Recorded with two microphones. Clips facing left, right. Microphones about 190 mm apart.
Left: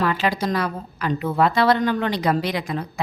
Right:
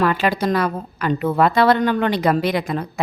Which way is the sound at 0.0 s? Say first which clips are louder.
Right 3 dB; 55° right (ahead or behind).